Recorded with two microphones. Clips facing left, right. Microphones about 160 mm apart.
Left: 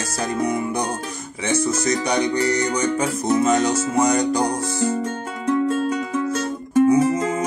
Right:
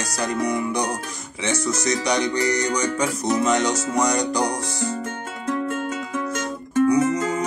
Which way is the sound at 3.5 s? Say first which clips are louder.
Left 2 dB; 30° left (ahead or behind).